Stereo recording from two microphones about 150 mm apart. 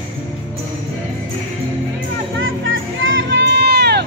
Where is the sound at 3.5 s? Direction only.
90° right.